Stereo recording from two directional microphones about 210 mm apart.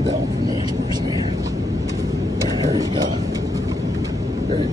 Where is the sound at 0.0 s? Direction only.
20° right (ahead or behind).